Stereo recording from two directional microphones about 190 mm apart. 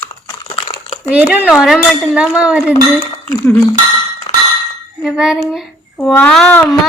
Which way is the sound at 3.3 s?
15° left (ahead or behind).